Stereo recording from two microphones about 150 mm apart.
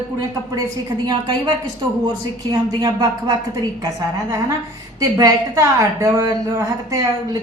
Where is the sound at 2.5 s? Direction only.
25° right (ahead or behind).